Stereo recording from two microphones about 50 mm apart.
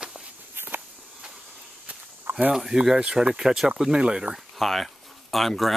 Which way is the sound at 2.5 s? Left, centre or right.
Centre.